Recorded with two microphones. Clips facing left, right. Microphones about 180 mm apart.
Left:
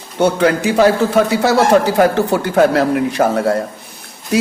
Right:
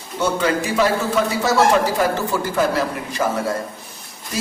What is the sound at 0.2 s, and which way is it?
A man's voice, 65° left (ahead or behind).